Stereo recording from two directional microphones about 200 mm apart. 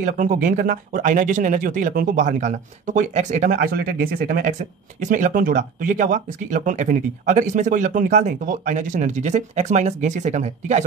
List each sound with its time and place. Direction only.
0.0 s speech: 40° right (ahead or behind)